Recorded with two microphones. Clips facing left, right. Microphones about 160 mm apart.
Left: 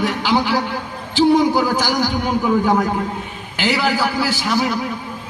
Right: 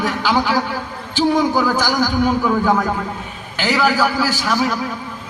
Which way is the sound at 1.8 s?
45° right (ahead or behind).